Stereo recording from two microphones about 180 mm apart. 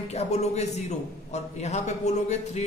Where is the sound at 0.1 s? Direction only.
35° left (ahead or behind).